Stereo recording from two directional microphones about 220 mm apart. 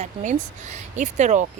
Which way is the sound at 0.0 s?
35° right (ahead or behind).